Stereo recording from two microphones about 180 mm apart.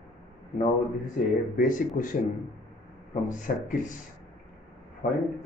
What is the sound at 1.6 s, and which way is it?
Speech, 45° left (ahead or behind).